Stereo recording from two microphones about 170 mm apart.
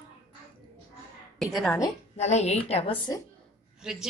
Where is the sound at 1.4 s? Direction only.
Centre (ahead or behind).